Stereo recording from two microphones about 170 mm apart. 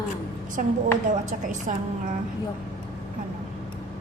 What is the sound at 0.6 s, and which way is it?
Speech, 50° right (ahead or behind).